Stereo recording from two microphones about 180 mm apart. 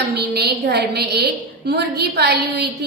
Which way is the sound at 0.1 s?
65° right (ahead or behind).